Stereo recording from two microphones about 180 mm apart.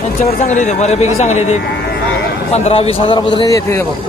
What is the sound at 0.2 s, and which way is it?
A man's voice, 40° left (ahead or behind).